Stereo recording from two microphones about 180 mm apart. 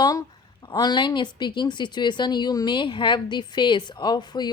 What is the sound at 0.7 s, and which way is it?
Speech, 20° left (ahead or behind).